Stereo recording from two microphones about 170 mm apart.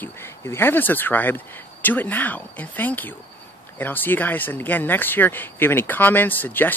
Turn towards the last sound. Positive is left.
turn(degrees=10)  # may be behind; listen again after turning